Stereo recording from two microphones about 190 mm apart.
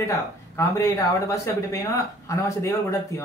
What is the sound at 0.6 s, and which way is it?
Speech, 15° left (ahead or behind).